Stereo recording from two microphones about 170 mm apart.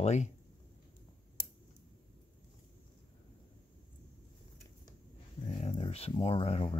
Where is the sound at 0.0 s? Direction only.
40° left (ahead or behind).